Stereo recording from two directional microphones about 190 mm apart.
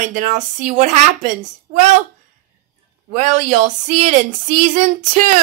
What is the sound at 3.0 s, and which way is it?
Speech, 40° right (ahead or behind).